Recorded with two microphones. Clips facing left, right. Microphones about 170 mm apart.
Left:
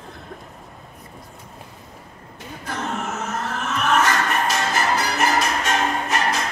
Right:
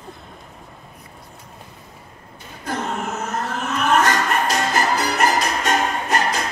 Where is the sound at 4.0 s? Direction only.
40° right (ahead or behind).